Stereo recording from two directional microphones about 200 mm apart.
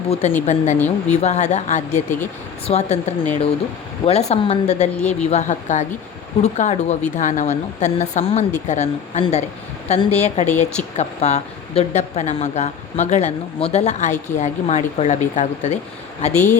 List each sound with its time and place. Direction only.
0.1 s speech: 30° left (ahead or behind)